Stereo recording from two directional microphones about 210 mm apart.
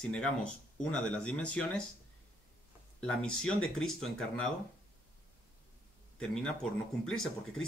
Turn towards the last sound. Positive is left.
turn(degrees=0)  # may be behind; listen again after turning